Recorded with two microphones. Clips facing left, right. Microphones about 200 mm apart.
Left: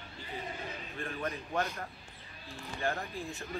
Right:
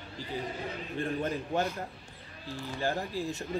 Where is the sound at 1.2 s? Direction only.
30° right (ahead or behind).